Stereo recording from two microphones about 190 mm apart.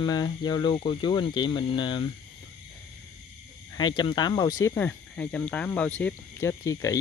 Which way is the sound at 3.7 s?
25° left (ahead or behind).